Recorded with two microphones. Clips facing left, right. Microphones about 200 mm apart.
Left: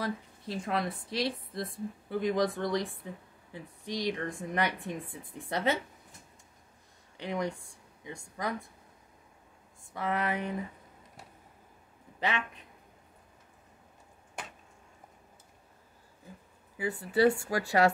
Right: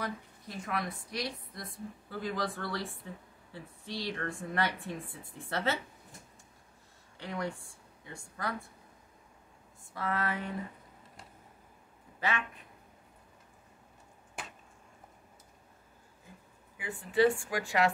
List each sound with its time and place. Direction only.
0.0 s a woman's voice: 30° left (ahead or behind)
7.2 s speech: 15° left (ahead or behind)
9.9 s a woman's voice: 20° left (ahead or behind)
12.2 s speech: 20° left (ahead or behind)
16.7 s speech: 40° left (ahead or behind)